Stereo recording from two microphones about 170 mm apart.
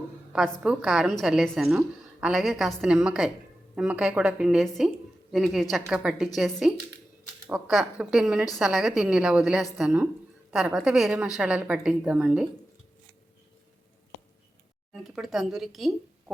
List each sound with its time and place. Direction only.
0.6 s a woman's voice: 5° right (ahead or behind)
14.9 s a woman's voice: centre (ahead or behind)